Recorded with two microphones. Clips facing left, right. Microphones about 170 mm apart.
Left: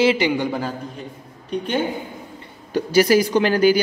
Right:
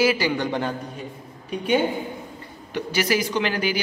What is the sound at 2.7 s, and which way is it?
Speech, 40° left (ahead or behind).